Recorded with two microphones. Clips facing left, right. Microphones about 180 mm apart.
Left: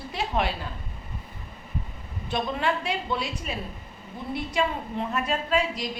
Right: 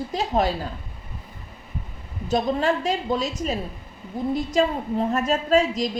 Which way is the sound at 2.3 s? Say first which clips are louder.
Right 5 dB; 40° right (ahead or behind).